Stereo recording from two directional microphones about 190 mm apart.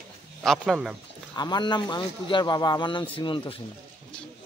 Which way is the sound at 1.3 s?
20° left (ahead or behind).